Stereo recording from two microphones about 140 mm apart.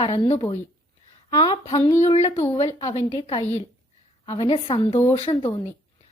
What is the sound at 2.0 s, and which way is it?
Speech, 55° left (ahead or behind).